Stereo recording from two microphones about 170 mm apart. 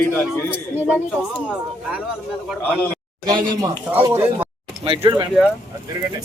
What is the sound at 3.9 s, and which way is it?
Speech, 15° right (ahead or behind).